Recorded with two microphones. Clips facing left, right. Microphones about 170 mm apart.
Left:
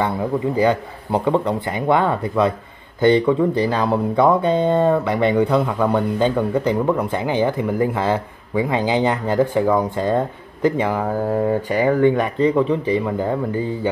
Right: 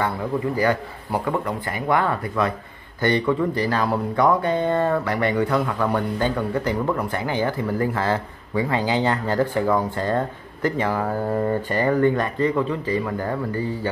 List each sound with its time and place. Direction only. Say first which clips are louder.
0.6 s speech: left 4 dB; 20° left (ahead or behind)